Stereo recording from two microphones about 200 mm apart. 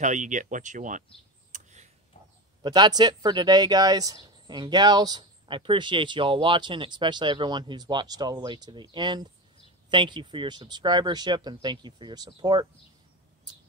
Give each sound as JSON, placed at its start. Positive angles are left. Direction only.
{"t": 0.0, "sound": "speech", "side_deg": -40}
{"t": 1.5, "sound": "tick-tock", "side_deg": -35}
{"t": 2.6, "sound": "speech", "side_deg": -20}